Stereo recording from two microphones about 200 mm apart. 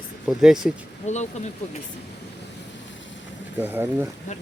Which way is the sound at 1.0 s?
35° left (ahead or behind).